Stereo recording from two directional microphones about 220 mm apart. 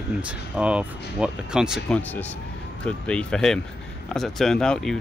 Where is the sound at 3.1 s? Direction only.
5° left (ahead or behind).